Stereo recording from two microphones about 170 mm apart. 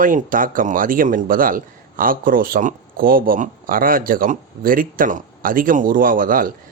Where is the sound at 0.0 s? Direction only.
55° right (ahead or behind).